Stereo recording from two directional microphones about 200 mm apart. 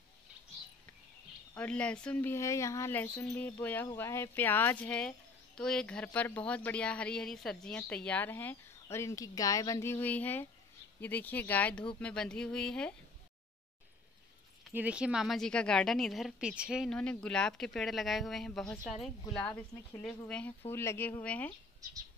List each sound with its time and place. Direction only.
1.5 s a woman's voice: 5° left (ahead or behind)
14.7 s a woman's voice: 5° right (ahead or behind)
19.2 s speech: 25° left (ahead or behind)
19.5 s a woman's voice: 5° left (ahead or behind)